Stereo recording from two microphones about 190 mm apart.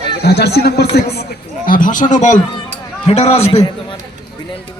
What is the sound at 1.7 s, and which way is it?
A man's voice, 45° left (ahead or behind).